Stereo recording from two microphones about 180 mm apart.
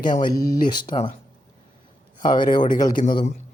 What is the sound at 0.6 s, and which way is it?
Speech, 25° left (ahead or behind).